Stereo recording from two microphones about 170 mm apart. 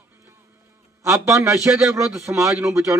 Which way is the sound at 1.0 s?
20° right (ahead or behind).